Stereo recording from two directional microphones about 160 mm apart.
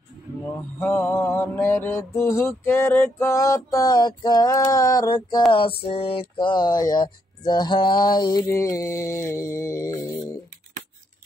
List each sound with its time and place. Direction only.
0.7 s mantra: 15° left (ahead or behind)
5.5 s speech: 35° left (ahead or behind); by 9.9 s 15° left (ahead or behind)